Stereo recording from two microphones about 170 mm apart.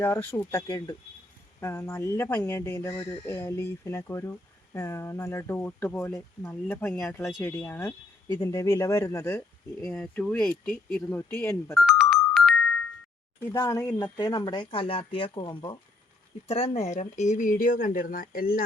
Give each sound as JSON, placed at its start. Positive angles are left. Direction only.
{"t": 0.0, "sound": "speech", "side_deg": 15}
{"t": 11.7, "sound": "music", "side_deg": 0}
{"t": 13.4, "sound": "speech", "side_deg": 15}